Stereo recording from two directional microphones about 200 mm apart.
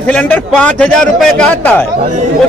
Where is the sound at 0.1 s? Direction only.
5° left (ahead or behind).